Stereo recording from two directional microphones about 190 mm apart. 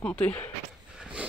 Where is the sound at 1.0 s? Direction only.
5° right (ahead or behind).